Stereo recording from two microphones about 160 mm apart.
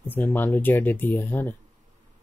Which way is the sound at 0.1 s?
10° left (ahead or behind).